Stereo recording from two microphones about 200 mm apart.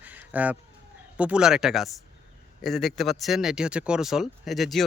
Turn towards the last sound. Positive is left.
turn(degrees=0)  # may be behind; listen again after turning